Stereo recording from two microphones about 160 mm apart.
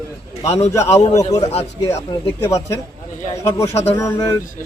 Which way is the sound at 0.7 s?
20° left (ahead or behind).